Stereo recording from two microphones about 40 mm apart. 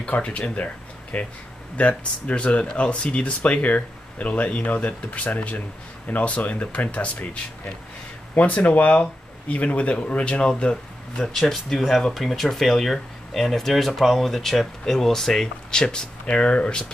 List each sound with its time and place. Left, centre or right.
0.0 s speech: left
1.1 s speech: left
1.8 s speech: left
8.4 s speech: left
11.1 s speech: centre; by 16.8 s left